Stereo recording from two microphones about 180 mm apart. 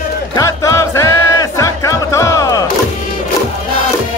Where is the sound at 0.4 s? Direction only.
15° left (ahead or behind).